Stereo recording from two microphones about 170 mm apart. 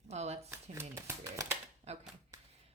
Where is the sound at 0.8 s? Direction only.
15° right (ahead or behind).